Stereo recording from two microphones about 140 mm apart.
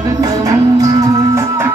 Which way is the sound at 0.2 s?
25° right (ahead or behind).